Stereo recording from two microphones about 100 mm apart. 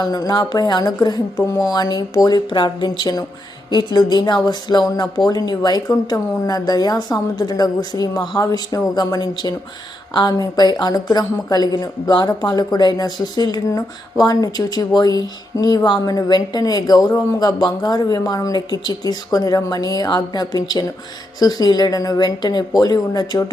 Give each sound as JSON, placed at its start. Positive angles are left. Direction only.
{"t": 0.0, "sound": "a woman's voice", "side_deg": 40}